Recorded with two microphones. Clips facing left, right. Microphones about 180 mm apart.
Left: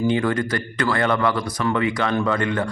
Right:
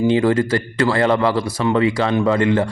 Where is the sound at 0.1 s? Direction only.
25° right (ahead or behind).